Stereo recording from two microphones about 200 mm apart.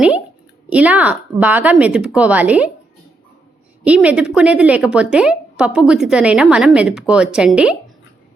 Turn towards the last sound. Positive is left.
turn(degrees=-5)  # may be behind; listen again after turning